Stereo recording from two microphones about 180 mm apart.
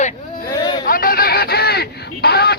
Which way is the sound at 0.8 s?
50° left (ahead or behind).